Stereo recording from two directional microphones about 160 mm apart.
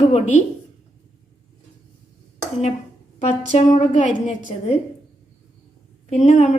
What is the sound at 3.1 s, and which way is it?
A woman's voice, 45° left (ahead or behind).